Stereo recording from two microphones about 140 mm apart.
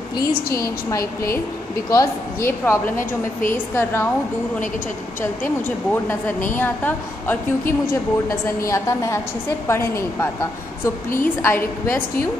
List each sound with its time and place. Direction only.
0.6 s a woman's voice: 25° left (ahead or behind)
2.6 s a woman's voice: 15° left (ahead or behind)
5.9 s a woman's voice: 15° left (ahead or behind)